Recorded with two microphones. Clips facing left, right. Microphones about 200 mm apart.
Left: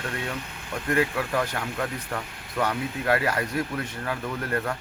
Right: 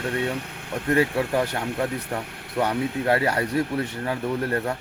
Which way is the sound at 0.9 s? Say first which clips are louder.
Right 4 dB; 25° right (ahead or behind).